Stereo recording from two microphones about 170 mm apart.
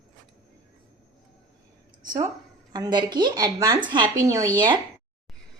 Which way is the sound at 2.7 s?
25° right (ahead or behind).